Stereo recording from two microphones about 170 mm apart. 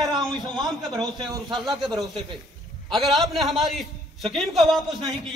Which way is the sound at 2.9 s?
Centre (ahead or behind).